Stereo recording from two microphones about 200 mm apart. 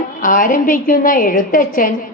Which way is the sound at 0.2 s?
40° left (ahead or behind).